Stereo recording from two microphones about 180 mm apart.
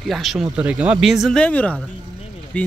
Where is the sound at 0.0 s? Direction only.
Centre (ahead or behind).